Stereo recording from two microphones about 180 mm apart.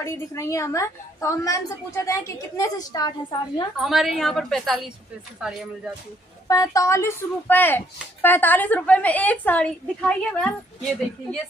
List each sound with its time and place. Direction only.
0.0 s speech: 15° left (ahead or behind)
3.7 s a woman's voice: centre (ahead or behind)
6.4 s speech: 20° left (ahead or behind)